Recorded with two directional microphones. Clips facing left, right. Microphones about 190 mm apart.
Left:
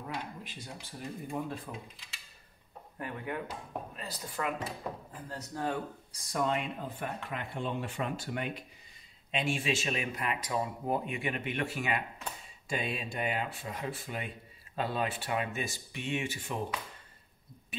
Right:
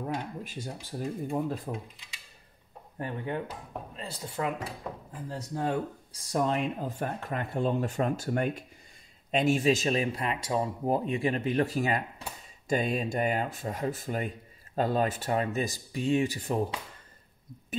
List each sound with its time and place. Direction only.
0.0 s speech: 45° right (ahead or behind)
3.0 s speech: 30° right (ahead or behind)
6.3 s speech: 35° right (ahead or behind)